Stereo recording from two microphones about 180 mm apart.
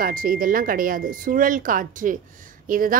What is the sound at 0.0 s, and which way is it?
A woman's voice, 50° right (ahead or behind).